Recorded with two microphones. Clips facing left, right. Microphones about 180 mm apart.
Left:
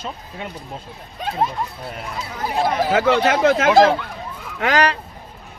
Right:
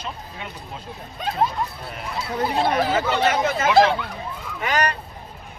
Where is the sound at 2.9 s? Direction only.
85° left.